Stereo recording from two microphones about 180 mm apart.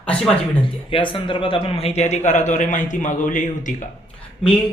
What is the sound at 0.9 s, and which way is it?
A man's voice, 30° left (ahead or behind).